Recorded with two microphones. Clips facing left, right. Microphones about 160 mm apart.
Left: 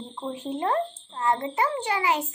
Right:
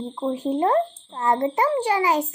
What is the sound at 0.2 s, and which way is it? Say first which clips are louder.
A child's voice: right 7 dB; 35° right (ahead or behind).